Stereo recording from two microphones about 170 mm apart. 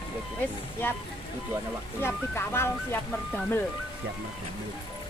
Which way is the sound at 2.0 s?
15° left (ahead or behind).